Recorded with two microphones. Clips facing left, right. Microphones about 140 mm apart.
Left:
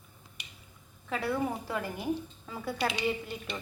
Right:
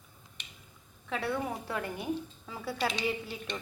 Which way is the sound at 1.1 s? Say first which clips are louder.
Left 2 dB; centre (ahead or behind).